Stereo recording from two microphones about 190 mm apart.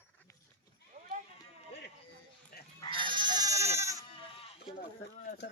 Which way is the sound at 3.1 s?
25° right (ahead or behind).